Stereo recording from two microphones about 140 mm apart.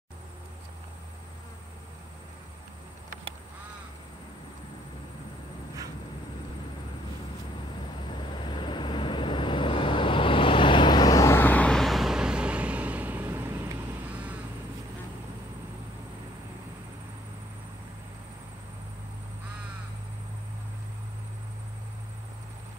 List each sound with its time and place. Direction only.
8.1 s vehicle: 35° left (ahead or behind); by 14.4 s 10° right (ahead or behind)